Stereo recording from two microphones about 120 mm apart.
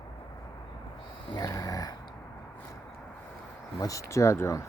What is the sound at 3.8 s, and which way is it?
Speech, 25° left (ahead or behind).